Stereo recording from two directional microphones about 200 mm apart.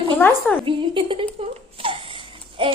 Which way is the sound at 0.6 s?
25° right (ahead or behind).